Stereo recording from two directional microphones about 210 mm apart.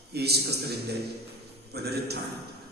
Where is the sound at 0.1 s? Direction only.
50° right (ahead or behind).